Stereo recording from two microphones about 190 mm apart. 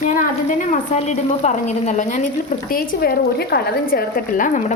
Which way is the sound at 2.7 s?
50° left (ahead or behind).